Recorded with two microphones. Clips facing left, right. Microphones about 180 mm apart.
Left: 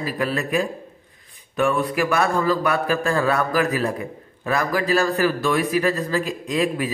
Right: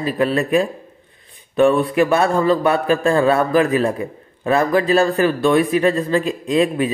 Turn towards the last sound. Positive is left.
turn(degrees=-25)  # may be behind; listen again after turning